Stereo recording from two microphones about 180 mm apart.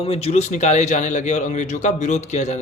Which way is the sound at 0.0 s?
35° left (ahead or behind).